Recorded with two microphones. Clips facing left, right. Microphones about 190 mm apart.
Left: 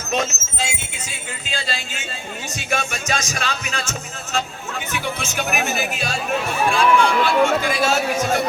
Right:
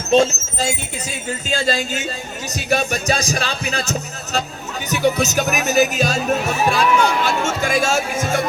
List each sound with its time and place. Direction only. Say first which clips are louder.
0.1 s speech: right 9 dB; 30° right (ahead or behind); by 8.4 s 50° right (ahead or behind)